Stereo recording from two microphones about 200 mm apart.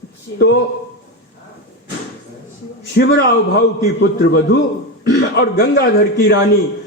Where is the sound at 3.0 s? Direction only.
55° left (ahead or behind).